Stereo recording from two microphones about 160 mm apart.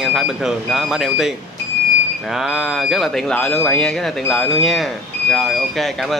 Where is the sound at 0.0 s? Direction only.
Centre (ahead or behind).